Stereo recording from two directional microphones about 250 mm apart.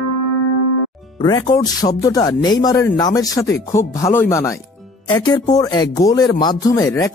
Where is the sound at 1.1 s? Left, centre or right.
Centre.